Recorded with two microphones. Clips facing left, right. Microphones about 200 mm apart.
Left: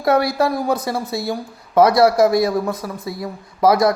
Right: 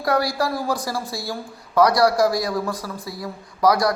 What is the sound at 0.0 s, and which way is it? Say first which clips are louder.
Speech: left 5 dB; 25° left (ahead or behind).